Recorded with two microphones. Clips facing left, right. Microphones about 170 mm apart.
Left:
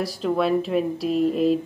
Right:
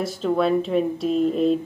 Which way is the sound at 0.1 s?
Centre (ahead or behind).